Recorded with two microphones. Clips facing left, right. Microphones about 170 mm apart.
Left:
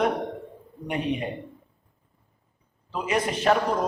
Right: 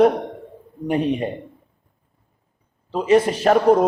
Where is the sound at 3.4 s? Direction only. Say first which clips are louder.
Right 6 dB; 50° right (ahead or behind).